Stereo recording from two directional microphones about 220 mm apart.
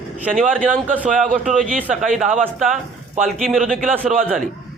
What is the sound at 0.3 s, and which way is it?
Speech, 5° left (ahead or behind).